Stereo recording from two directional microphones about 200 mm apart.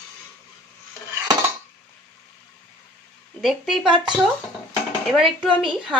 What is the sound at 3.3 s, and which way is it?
Speech, centre (ahead or behind).